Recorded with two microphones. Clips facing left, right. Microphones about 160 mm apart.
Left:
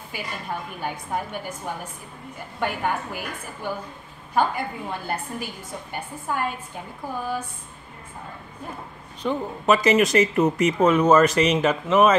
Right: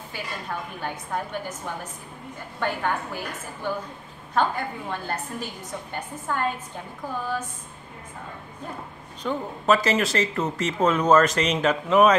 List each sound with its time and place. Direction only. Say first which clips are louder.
0.1 s speech: left 2 dB; 10° left (ahead or behind)
9.2 s speech: left 2 dB; 10° left (ahead or behind)